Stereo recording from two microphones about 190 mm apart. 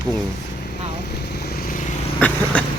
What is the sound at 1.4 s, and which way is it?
Vehicle, 50° left (ahead or behind).